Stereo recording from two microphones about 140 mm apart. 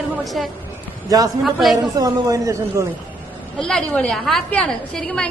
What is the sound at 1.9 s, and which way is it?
Speech, 25° right (ahead or behind).